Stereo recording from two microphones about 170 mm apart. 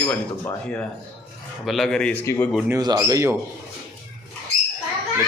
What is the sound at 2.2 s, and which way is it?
Speech, 15° left (ahead or behind).